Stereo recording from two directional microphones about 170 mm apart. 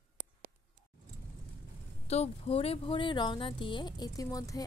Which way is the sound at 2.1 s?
35° left (ahead or behind).